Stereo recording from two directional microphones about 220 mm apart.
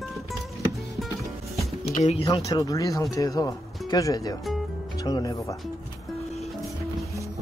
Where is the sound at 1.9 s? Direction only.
35° left (ahead or behind).